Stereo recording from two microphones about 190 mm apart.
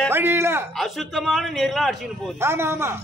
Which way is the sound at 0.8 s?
Centre (ahead or behind).